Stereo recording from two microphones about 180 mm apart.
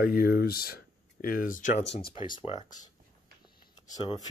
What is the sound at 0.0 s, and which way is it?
Speech, 55° left (ahead or behind).